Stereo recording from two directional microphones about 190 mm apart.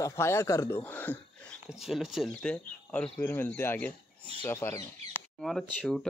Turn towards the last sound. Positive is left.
turn(degrees=0)  # may be behind; listen again after turning